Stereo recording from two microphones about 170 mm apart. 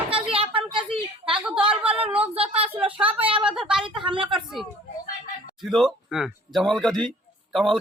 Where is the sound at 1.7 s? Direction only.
5° right (ahead or behind).